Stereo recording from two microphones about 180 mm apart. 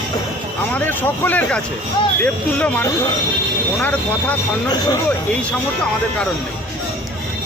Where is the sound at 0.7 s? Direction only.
10° left (ahead or behind).